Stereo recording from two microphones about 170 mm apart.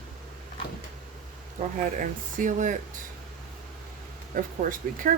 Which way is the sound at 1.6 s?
50° right (ahead or behind).